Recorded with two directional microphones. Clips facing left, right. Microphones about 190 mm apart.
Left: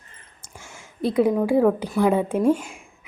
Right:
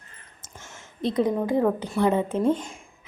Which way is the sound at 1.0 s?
5° left (ahead or behind).